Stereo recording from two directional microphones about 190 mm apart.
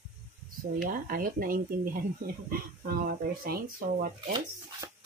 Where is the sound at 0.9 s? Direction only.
45° right (ahead or behind).